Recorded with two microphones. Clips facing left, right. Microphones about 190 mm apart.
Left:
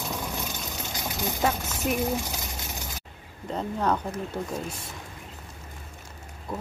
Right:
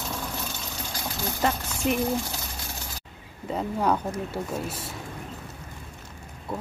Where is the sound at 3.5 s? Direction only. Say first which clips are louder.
Right 2 dB; 10° right (ahead or behind).